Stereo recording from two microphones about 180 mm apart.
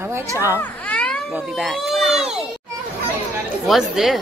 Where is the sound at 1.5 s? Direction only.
Centre (ahead or behind).